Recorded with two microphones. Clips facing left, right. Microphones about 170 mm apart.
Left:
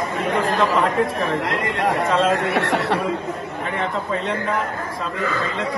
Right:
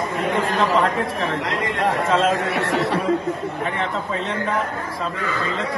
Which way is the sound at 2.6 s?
70° left (ahead or behind).